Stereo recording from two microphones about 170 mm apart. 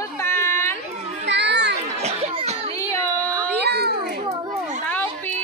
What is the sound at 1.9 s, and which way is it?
Children playing, 40° right (ahead or behind).